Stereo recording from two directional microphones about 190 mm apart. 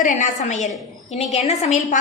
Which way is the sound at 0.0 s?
40° left (ahead or behind).